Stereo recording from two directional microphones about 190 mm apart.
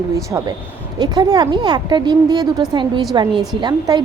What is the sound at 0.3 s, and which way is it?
A woman's voice, 15° right (ahead or behind).